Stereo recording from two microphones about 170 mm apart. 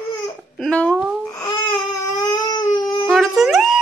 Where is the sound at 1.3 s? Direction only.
25° left (ahead or behind).